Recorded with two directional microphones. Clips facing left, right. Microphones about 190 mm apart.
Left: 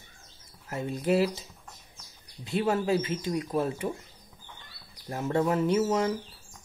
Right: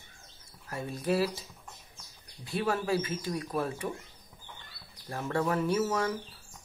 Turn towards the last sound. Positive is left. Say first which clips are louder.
# left 4 dB
turn(degrees=25)  # may be behind; listen again after turning